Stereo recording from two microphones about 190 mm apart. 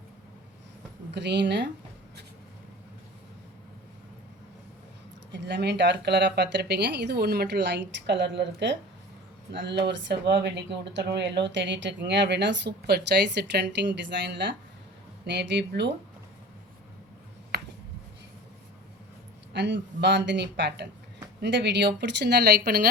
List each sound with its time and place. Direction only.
1.1 s speech: 65° right (ahead or behind)
5.3 s speech: 65° right (ahead or behind)
19.5 s speech: 65° right (ahead or behind)